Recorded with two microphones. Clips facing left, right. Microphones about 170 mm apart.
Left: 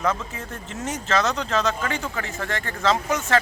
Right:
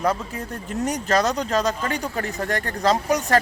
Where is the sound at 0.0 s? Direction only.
35° right (ahead or behind).